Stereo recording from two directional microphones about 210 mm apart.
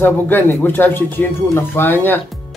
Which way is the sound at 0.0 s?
10° left (ahead or behind).